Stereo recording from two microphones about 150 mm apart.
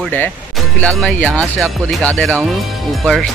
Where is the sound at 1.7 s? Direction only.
5° left (ahead or behind).